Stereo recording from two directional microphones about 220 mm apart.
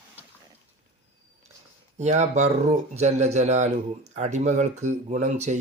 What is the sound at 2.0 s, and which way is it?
Speech, 30° right (ahead or behind).